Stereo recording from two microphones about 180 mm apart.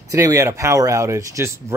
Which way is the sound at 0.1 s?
15° right (ahead or behind).